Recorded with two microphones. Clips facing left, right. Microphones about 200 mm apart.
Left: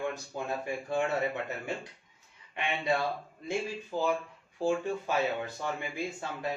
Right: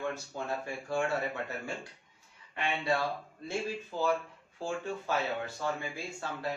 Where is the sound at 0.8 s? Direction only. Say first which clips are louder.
Left 1 dB; 20° left (ahead or behind).